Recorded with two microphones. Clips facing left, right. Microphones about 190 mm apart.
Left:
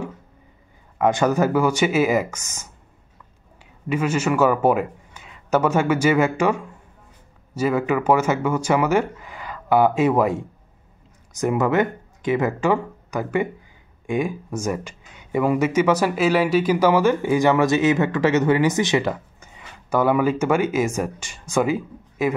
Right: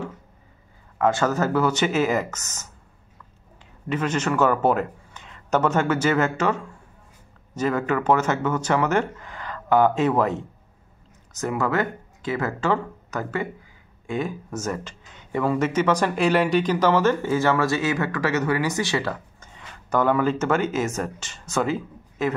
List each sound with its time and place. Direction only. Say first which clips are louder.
0.9 s speech: left 3 dB; 15° left (ahead or behind)
3.9 s speech: left 3 dB; 10° left (ahead or behind)